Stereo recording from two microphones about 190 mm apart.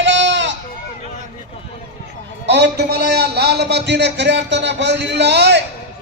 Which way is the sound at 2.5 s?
60° right (ahead or behind).